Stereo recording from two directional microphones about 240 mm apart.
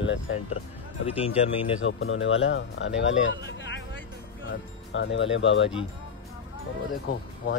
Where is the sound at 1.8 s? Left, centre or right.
Left.